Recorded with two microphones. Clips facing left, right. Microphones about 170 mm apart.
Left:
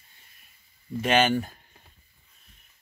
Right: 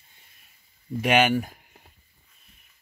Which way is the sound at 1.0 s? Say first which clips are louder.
Right 1 dB; 10° right (ahead or behind).